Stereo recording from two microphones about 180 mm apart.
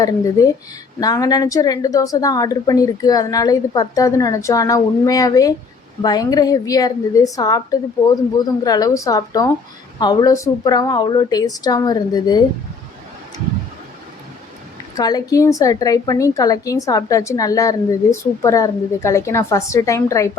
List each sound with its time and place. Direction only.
0.0 s a woman's voice: 20° left (ahead or behind)
14.9 s a woman's voice: 20° left (ahead or behind)